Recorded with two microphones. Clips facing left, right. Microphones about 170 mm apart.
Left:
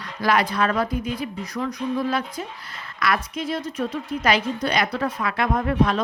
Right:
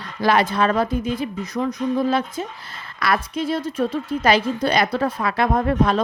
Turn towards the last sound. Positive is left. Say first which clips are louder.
# right 2 dB
turn(degrees=-30)  # may be behind; listen again after turning